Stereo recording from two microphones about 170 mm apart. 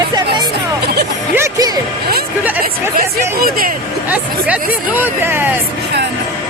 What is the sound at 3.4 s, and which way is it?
Speech, 60° right (ahead or behind).